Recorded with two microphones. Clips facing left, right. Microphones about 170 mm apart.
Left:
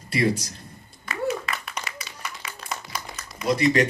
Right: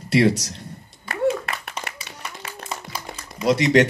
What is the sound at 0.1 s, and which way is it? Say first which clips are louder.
Speech: right 6 dB; 75° right (ahead or behind).